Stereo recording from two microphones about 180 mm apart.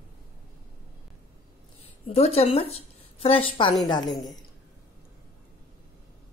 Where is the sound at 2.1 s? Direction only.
35° left (ahead or behind).